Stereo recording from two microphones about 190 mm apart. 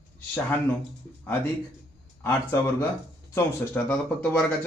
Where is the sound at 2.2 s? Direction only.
15° left (ahead or behind).